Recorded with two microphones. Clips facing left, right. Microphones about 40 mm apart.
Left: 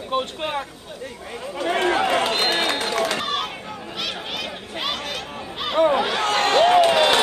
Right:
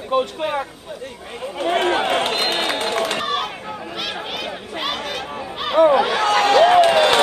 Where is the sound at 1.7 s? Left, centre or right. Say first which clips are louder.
Right 1 dB; right.